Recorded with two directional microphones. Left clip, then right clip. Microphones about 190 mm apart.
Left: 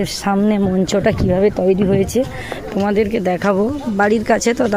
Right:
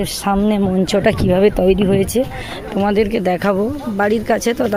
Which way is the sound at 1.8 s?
Centre (ahead or behind).